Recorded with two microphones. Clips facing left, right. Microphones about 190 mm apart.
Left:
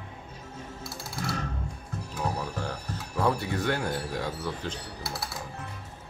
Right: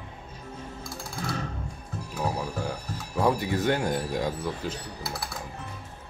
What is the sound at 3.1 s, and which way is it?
Speech, 15° right (ahead or behind).